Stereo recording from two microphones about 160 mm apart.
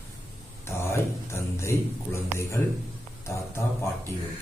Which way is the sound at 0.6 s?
15° left (ahead or behind).